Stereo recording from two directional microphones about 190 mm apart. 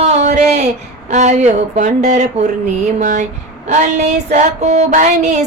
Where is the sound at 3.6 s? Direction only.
40° right (ahead or behind).